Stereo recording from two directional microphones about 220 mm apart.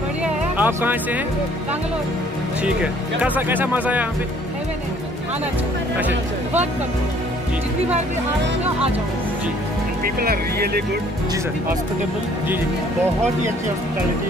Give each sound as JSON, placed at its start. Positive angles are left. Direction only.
{"t": 0.2, "sound": "music", "side_deg": -10}
{"t": 2.6, "sound": "speech", "side_deg": -5}
{"t": 5.9, "sound": "speech", "side_deg": -5}
{"t": 10.0, "sound": "speech", "side_deg": -40}